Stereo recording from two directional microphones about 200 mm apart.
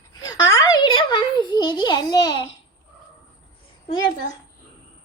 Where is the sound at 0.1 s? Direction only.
20° left (ahead or behind).